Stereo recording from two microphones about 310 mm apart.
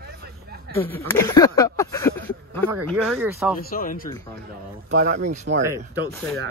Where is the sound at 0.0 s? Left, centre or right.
Right.